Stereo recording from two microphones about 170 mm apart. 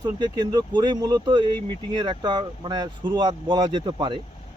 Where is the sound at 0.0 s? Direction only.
25° right (ahead or behind).